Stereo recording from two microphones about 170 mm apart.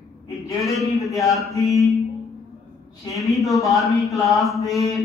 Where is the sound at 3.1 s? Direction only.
Centre (ahead or behind).